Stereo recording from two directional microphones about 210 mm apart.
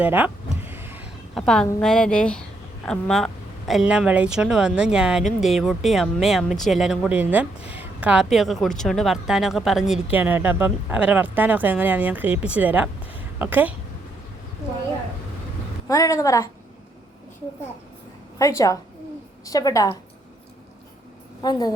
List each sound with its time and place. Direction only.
0.0 s speech: 10° right (ahead or behind)
0.6 s a sound: 10° right (ahead or behind)
1.3 s speech: centre (ahead or behind)
15.9 s a woman's voice: 15° left (ahead or behind)
18.3 s a woman's voice: 15° left (ahead or behind)
21.4 s a woman's voice: 20° left (ahead or behind)